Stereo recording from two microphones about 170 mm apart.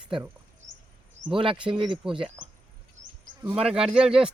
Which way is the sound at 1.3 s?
30° right (ahead or behind).